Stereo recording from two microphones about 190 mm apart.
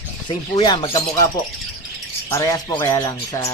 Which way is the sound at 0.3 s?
20° left (ahead or behind).